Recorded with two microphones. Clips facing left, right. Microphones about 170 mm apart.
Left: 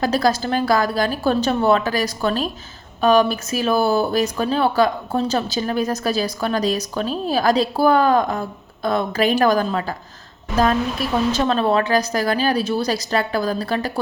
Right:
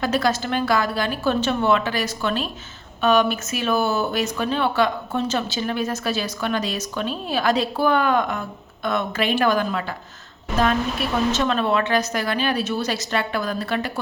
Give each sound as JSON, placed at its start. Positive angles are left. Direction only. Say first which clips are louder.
{"t": 0.0, "sound": "speech", "louder": "left 3 dB", "side_deg": 35}
{"t": 11.3, "sound": "speech", "louder": "left 3 dB", "side_deg": 35}